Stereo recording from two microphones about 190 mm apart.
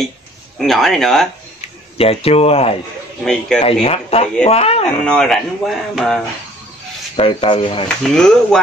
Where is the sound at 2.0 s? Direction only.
30° left (ahead or behind).